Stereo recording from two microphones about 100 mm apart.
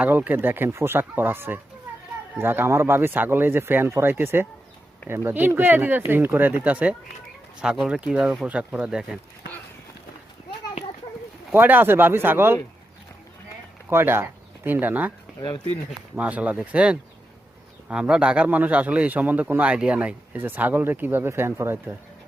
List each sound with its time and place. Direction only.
0.0 s a man's voice: 15° right (ahead or behind)
11.5 s speech: 20° right (ahead or behind)
13.9 s speech: 25° right (ahead or behind)
16.1 s a man's voice: 15° right (ahead or behind)